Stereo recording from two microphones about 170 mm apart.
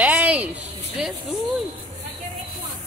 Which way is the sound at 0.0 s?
10° right (ahead or behind).